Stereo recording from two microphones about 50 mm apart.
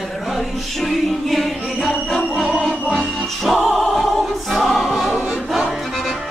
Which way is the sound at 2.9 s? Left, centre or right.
Centre.